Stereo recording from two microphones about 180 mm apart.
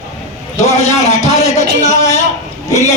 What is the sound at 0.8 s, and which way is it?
A man's voice, 35° left (ahead or behind).